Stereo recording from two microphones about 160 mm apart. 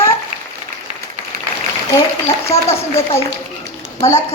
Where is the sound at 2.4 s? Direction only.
40° left (ahead or behind).